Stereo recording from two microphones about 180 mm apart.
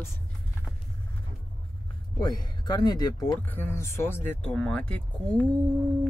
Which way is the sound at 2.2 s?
25° left (ahead or behind).